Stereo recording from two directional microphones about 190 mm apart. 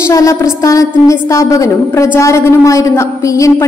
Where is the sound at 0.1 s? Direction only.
15° left (ahead or behind).